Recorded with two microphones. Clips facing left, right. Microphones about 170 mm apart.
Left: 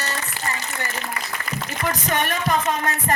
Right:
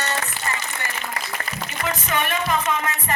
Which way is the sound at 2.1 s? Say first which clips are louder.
Left 1 dB; 45° left (ahead or behind).